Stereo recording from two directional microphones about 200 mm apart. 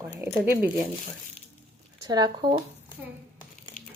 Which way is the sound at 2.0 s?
20° right (ahead or behind).